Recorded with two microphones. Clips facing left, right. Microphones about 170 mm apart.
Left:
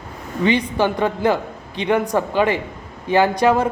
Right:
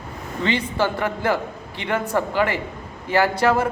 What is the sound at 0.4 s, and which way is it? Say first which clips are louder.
A woman's voice: left 4 dB; 15° left (ahead or behind).